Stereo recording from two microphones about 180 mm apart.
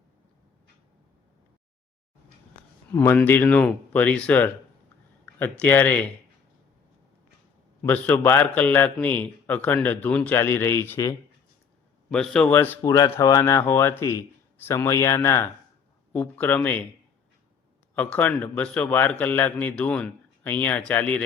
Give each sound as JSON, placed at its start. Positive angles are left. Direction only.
{"t": 2.9, "sound": "a man's voice", "side_deg": 15}
{"t": 7.8, "sound": "a man's voice", "side_deg": 10}
{"t": 12.1, "sound": "a man's voice", "side_deg": 5}
{"t": 17.9, "sound": "a man's voice", "side_deg": 10}